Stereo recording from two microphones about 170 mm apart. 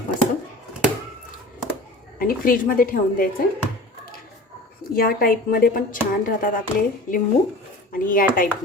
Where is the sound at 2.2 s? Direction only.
55° left (ahead or behind).